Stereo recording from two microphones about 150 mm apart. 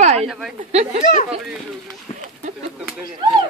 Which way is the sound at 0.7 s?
45° right (ahead or behind).